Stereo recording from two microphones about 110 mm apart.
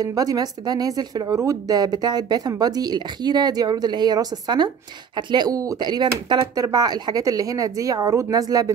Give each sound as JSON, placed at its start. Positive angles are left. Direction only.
{"t": 0.0, "sound": "speech", "side_deg": -35}